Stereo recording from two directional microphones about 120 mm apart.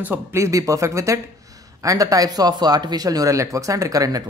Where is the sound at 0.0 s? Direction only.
20° right (ahead or behind).